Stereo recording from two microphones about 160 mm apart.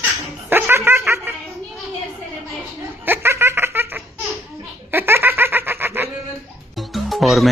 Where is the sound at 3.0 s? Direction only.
15° right (ahead or behind).